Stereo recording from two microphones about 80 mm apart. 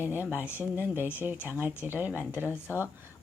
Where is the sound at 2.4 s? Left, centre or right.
Left.